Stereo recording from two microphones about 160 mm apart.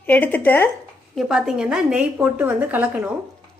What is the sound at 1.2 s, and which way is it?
A woman's voice, centre (ahead or behind).